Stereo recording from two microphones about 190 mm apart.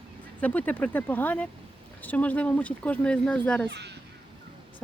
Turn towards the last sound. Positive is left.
turn(degrees=-65)  # may be behind; listen again after turning